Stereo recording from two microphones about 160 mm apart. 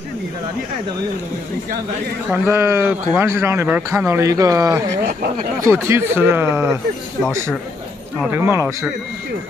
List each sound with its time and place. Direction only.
2.2 s a man's voice: 10° right (ahead or behind)
8.3 s a man's voice: 15° right (ahead or behind)